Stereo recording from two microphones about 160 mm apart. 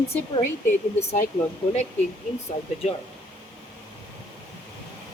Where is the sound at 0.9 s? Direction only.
45° left (ahead or behind).